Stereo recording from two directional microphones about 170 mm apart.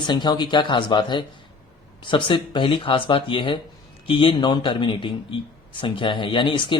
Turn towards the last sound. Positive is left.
turn(degrees=30)  # may be behind; listen again after turning